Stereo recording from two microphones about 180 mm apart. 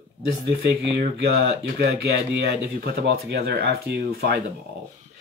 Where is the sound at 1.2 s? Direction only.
70° right (ahead or behind).